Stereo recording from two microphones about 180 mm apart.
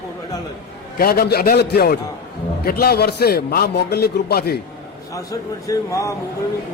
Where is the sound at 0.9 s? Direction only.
55° left (ahead or behind).